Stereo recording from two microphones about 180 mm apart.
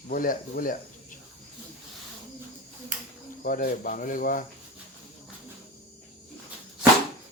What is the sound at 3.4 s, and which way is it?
Speech, 50° left (ahead or behind).